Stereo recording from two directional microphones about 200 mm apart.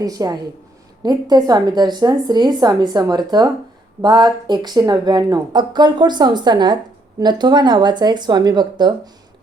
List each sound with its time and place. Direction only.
0.0 s speech: 20° right (ahead or behind)